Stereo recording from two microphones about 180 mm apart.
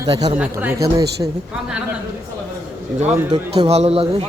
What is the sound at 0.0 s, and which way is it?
Speech, 20° right (ahead or behind).